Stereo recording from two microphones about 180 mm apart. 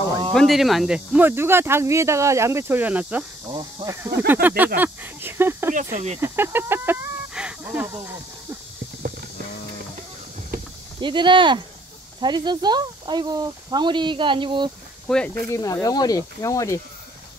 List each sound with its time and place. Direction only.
0.3 s speech: centre (ahead or behind)
3.4 s speech: 20° right (ahead or behind)
5.8 s speech: 40° right (ahead or behind)
6.2 s speech: 10° right (ahead or behind)
11.0 s speech: 25° right (ahead or behind)
15.0 s speech: 5° left (ahead or behind)
15.6 s speech: 20° left (ahead or behind)